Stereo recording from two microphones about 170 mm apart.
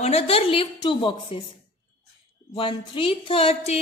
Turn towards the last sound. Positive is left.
turn(degrees=40)  # may be behind; listen again after turning